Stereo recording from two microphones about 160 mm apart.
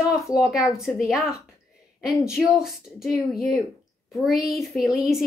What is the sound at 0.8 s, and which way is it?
Speech, centre (ahead or behind).